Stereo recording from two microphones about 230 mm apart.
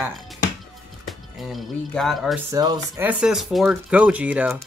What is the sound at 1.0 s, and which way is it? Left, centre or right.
Speech, centre.